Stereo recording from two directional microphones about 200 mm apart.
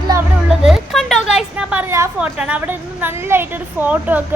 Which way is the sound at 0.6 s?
Centre (ahead or behind).